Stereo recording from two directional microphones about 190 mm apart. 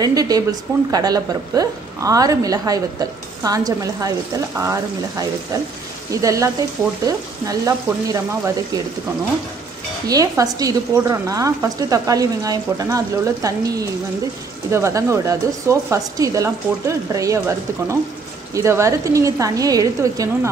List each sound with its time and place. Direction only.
0.0 s a woman's voice: 20° right (ahead or behind)
10.0 s speech: 20° right (ahead or behind)